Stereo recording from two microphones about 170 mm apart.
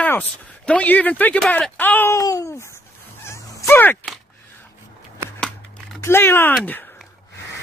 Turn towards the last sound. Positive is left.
turn(degrees=10)  # may be behind; listen again after turning